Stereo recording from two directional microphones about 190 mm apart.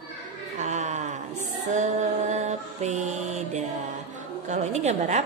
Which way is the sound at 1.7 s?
40° right (ahead or behind).